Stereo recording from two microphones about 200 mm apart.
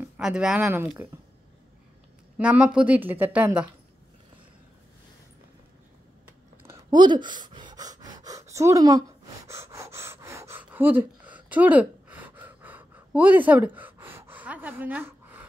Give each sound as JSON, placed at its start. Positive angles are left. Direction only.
{"t": 0.2, "sound": "a woman's voice", "side_deg": -5}
{"t": 2.3, "sound": "a woman's voice", "side_deg": -5}
{"t": 6.6, "sound": "pant", "side_deg": -15}
{"t": 9.5, "sound": "gasp", "side_deg": -15}